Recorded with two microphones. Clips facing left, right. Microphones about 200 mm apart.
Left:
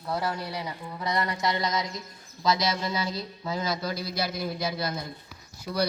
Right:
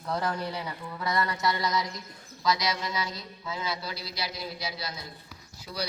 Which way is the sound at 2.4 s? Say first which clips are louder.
Left 2 dB; 25° left (ahead or behind).